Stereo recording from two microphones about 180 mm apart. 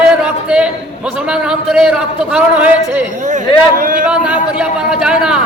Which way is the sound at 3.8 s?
50° right (ahead or behind).